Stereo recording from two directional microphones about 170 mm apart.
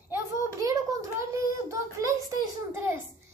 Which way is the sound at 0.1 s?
20° right (ahead or behind).